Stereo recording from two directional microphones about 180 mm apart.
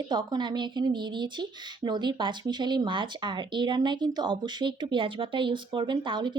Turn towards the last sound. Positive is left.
turn(degrees=-25)  # may be behind; listen again after turning